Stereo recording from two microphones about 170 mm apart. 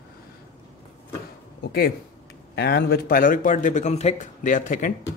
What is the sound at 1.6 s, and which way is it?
Speech, 65° left (ahead or behind).